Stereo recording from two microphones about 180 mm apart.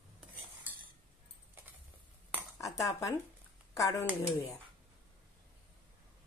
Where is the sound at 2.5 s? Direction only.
20° left (ahead or behind).